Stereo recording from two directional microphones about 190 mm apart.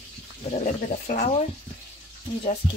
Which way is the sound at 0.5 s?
45° left (ahead or behind).